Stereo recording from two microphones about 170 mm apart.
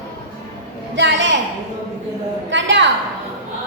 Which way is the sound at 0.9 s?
90° right.